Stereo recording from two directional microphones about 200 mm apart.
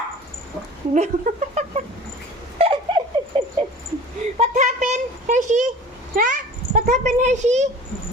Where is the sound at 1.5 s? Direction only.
35° right (ahead or behind).